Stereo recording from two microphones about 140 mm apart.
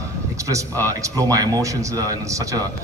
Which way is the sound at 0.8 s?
25° right (ahead or behind).